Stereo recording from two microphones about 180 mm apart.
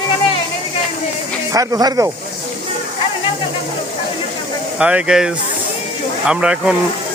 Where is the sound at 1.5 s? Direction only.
20° right (ahead or behind).